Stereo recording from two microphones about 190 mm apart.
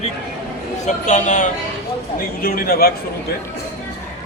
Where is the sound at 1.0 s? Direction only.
40° left (ahead or behind).